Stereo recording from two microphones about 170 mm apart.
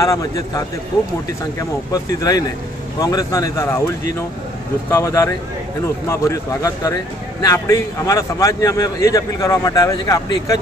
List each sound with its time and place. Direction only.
0.0 s a man's voice: 20° left (ahead or behind)
3.0 s a man's voice: 20° left (ahead or behind)
4.9 s a man's voice: 20° left (ahead or behind)